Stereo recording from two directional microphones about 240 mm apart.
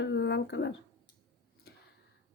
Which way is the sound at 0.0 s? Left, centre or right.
Left.